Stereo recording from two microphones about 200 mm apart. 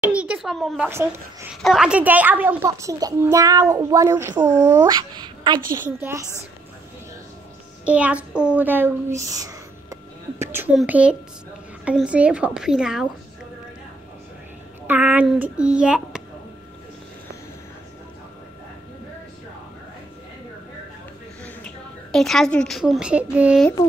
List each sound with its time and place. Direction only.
0.0 s a child's voice: 5° right (ahead or behind)
4.4 s speech: 35° right (ahead or behind)
4.6 s a child's voice: 20° right (ahead or behind)
7.8 s a child's voice: 5° right (ahead or behind)
14.9 s a child's voice: 10° right (ahead or behind)
21.6 s a woman's voice: centre (ahead or behind)